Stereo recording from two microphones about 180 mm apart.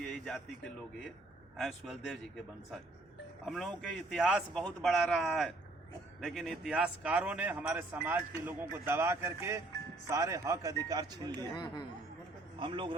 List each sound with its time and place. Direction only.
0.1 s a man's voice: centre (ahead or behind); by 11.4 s 20° right (ahead or behind)
12.5 s a man's voice: 25° right (ahead or behind)